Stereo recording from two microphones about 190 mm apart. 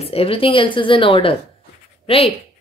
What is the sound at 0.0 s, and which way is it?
Speech, 30° left (ahead or behind).